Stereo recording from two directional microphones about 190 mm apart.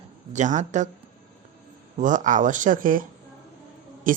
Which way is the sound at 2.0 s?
40° right (ahead or behind).